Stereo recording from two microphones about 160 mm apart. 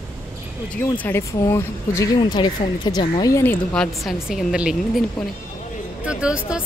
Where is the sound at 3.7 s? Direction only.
Centre (ahead or behind).